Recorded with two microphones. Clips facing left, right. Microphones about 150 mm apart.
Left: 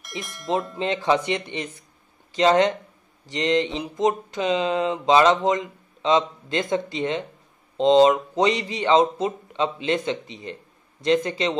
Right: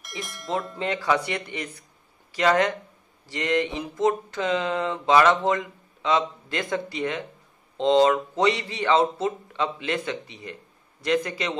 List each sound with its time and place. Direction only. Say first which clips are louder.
0.2 s speech: right 5 dB; centre (ahead or behind)
0.7 s speech: left 1 dB; 25° left (ahead or behind)